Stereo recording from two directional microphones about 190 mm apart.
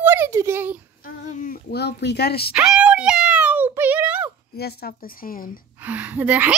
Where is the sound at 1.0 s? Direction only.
45° left (ahead or behind).